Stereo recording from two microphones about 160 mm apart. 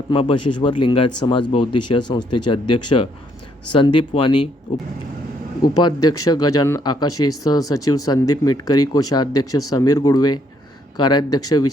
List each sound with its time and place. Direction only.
0.1 s speech: 35° left (ahead or behind)
5.6 s speech: 25° left (ahead or behind)